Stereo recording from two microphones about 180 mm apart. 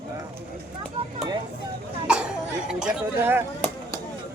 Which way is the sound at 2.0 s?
5° right (ahead or behind).